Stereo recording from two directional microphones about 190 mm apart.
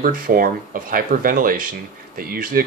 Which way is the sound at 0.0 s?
45° right (ahead or behind).